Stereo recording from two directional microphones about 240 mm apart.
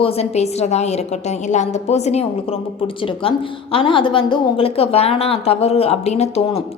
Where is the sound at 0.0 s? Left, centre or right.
Left.